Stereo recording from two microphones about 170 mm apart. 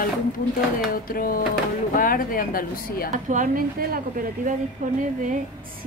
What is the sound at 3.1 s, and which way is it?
Speech, 50° right (ahead or behind).